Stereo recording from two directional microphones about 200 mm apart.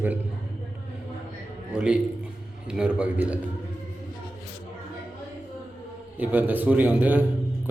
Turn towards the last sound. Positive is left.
turn(degrees=-10)  # may be behind; listen again after turning